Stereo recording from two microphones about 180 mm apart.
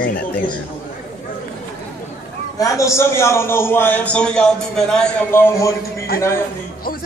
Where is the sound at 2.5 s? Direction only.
15° left (ahead or behind).